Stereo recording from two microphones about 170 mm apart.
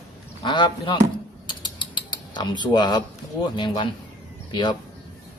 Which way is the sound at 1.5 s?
25° left (ahead or behind).